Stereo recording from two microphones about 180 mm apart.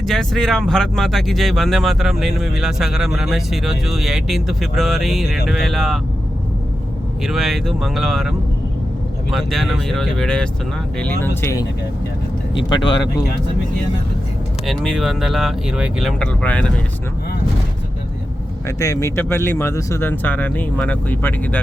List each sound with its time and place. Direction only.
0.0 s speech: 5° left (ahead or behind)
7.2 s speech: centre (ahead or behind)
12.5 s speech: 25° left (ahead or behind)
14.7 s speech: centre (ahead or behind)
18.8 s speech: 15° left (ahead or behind)